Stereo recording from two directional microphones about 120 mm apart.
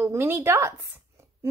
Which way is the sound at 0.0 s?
20° right (ahead or behind).